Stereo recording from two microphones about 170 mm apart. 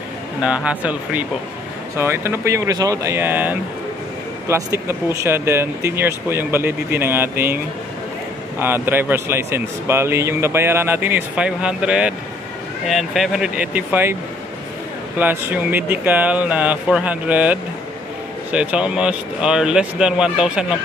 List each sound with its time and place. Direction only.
0.4 s speech: 5° right (ahead or behind)
15.1 s speech: 10° right (ahead or behind)